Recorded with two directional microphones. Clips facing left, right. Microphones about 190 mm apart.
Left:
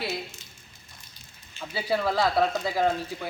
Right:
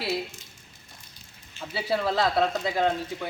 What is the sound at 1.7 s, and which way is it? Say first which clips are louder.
Speech: even; centre (ahead or behind).